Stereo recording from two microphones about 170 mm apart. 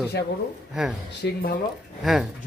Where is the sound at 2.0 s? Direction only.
Centre (ahead or behind).